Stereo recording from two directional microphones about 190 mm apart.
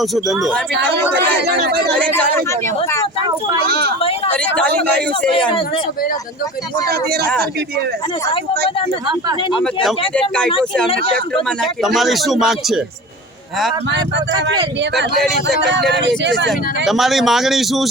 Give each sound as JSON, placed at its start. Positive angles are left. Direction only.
{"t": 0.0, "sound": "speech", "side_deg": 0}
{"t": 1.5, "sound": "speech", "side_deg": -55}
{"t": 3.7, "sound": "speech", "side_deg": -55}
{"t": 4.4, "sound": "speech", "side_deg": 5}
{"t": 5.5, "sound": "speech", "side_deg": 25}
{"t": 6.9, "sound": "speech", "side_deg": -55}
{"t": 9.4, "sound": "speech", "side_deg": 25}
{"t": 10.2, "sound": "speech", "side_deg": 5}
{"t": 10.8, "sound": "speech", "side_deg": 30}
{"t": 11.4, "sound": "speech", "side_deg": 0}
{"t": 15.9, "sound": "speech", "side_deg": -65}
{"t": 16.5, "sound": "speech", "side_deg": 0}